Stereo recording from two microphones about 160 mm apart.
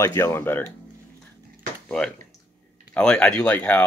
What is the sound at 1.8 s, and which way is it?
Speech, 5° left (ahead or behind).